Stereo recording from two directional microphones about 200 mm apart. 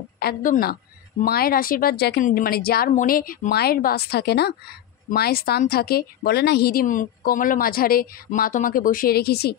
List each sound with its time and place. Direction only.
0.2 s a woman's voice: 45° left (ahead or behind)